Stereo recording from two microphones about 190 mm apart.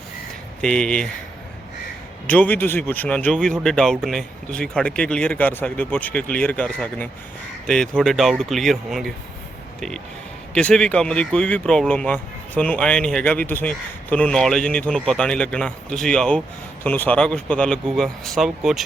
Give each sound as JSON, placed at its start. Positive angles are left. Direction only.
{"t": 0.6, "sound": "speech", "side_deg": 5}
{"t": 2.2, "sound": "speech", "side_deg": 10}
{"t": 10.5, "sound": "speech", "side_deg": 5}